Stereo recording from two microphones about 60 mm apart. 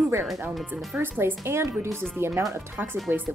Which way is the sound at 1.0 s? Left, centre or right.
Right.